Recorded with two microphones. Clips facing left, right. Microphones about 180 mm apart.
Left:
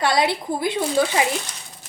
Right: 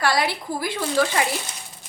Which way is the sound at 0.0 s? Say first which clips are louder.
Left 2 dB; 20° left (ahead or behind).